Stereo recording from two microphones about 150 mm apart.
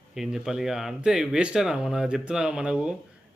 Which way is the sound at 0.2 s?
5° right (ahead or behind).